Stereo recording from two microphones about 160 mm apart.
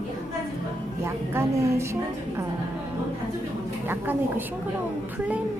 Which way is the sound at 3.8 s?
15° right (ahead or behind).